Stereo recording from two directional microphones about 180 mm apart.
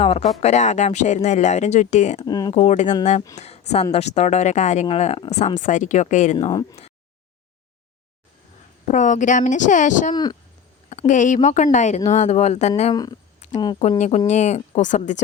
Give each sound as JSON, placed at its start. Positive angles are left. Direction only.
{"t": 0.0, "sound": "speech", "side_deg": 35}
{"t": 2.2, "sound": "speech", "side_deg": 20}
{"t": 2.6, "sound": "speech", "side_deg": 40}
{"t": 6.3, "sound": "speech", "side_deg": 25}
{"t": 8.9, "sound": "speech", "side_deg": 45}
{"t": 10.8, "sound": "a sound", "side_deg": 40}
{"t": 11.4, "sound": "speech", "side_deg": 40}
{"t": 12.9, "sound": "speech", "side_deg": 25}
{"t": 14.3, "sound": "speech", "side_deg": 40}